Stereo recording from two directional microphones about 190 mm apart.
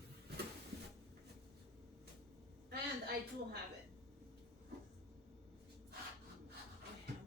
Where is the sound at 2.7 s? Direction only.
55° right (ahead or behind).